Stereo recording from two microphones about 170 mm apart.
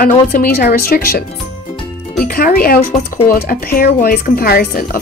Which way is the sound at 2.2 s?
60° left (ahead or behind).